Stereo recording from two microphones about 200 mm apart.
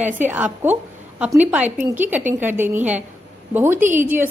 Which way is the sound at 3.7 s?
40° right (ahead or behind).